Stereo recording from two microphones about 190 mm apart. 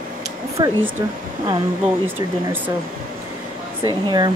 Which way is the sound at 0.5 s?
15° right (ahead or behind).